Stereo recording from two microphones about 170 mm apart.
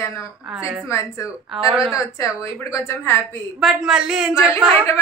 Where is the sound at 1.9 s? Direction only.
15° left (ahead or behind).